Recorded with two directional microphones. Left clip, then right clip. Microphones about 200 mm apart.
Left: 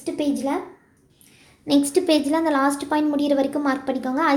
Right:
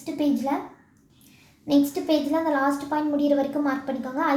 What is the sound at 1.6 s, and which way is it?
A woman's voice, 40° left (ahead or behind).